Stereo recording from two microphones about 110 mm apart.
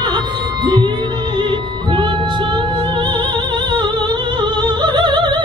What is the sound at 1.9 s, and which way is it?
Music, 45° right (ahead or behind).